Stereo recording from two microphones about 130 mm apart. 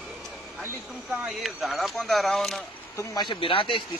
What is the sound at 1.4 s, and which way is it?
Speech, centre (ahead or behind).